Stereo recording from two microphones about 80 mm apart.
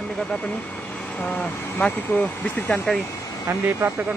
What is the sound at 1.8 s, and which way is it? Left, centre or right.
Speech, centre.